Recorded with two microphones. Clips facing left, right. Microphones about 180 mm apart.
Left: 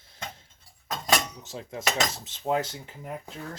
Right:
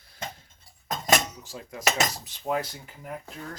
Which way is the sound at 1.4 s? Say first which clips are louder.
Right 2 dB; 25° left (ahead or behind).